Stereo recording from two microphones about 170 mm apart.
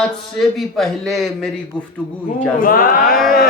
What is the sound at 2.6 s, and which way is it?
Speech, 55° left (ahead or behind).